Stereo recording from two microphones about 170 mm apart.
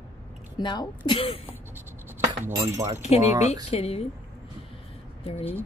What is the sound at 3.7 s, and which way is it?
Speech, 35° left (ahead or behind).